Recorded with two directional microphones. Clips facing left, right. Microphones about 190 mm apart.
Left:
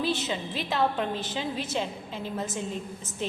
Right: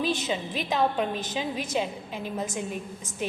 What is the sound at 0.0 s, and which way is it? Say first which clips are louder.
A woman's voice: right 1 dB; 15° right (ahead or behind).